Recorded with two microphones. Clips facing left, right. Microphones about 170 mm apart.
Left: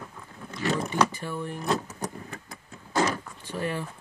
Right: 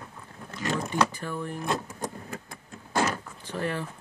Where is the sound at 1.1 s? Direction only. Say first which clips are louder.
Even; 10° left (ahead or behind).